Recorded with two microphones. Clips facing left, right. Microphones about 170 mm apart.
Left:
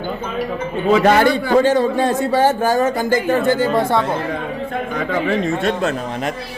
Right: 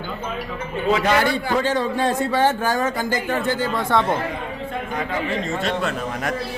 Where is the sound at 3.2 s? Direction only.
45° left (ahead or behind).